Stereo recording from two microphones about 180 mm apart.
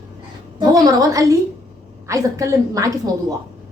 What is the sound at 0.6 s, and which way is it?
A woman's voice, 20° right (ahead or behind).